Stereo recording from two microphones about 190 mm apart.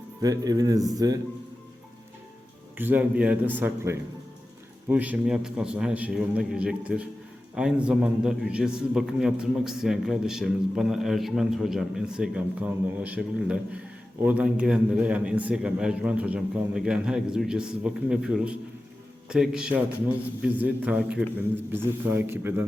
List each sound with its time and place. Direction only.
0.2 s speech: 20° right (ahead or behind)
2.7 s a man's voice: 10° right (ahead or behind)